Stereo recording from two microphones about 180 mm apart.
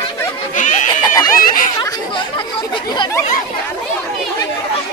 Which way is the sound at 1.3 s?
50° left (ahead or behind).